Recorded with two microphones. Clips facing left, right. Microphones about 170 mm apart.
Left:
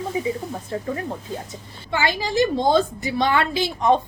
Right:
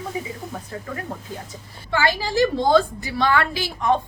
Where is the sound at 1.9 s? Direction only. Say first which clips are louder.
Even; 20° left (ahead or behind).